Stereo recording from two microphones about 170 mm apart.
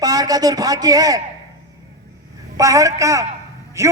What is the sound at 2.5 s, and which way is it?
A man's voice, 20° right (ahead or behind).